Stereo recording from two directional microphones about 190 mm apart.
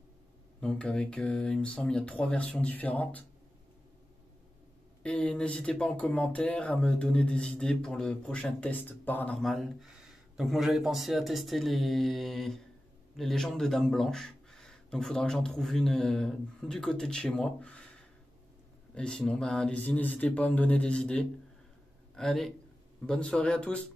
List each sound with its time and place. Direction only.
0.6 s speech: 5° left (ahead or behind)
5.0 s speech: 5° left (ahead or behind)
18.9 s speech: 5° left (ahead or behind)